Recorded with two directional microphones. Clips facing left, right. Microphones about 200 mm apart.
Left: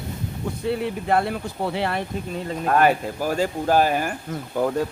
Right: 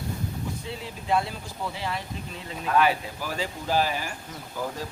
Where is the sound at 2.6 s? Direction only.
50° left (ahead or behind).